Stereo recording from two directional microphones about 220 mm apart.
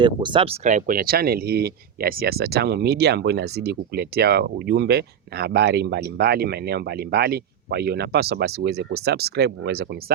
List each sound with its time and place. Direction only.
0.0 s speech: 20° right (ahead or behind); by 9.8 s 50° right (ahead or behind)